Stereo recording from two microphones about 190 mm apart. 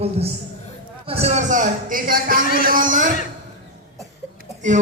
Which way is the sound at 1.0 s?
35° right (ahead or behind).